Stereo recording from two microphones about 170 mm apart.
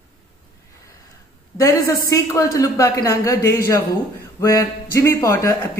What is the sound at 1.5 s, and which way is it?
A man's voice, 20° left (ahead or behind).